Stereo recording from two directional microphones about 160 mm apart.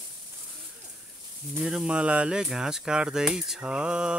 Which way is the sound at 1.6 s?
5° right (ahead or behind).